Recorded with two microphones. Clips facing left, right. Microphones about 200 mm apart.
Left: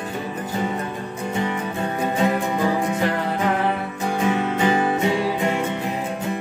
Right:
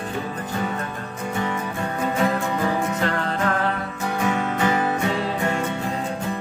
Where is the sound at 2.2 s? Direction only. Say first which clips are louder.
Left 2 dB; 15° left (ahead or behind).